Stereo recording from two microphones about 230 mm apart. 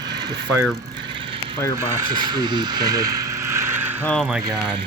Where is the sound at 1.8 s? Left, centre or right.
Centre.